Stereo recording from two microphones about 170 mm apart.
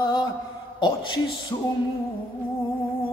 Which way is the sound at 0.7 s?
25° left (ahead or behind).